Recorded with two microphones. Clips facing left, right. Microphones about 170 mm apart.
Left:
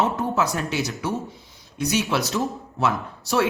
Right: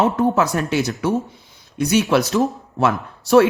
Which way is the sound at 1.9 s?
55° right (ahead or behind).